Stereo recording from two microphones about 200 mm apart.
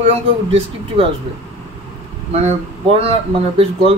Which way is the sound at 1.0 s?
30° right (ahead or behind).